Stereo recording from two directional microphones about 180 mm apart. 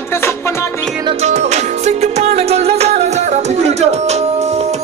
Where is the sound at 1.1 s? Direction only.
40° right (ahead or behind).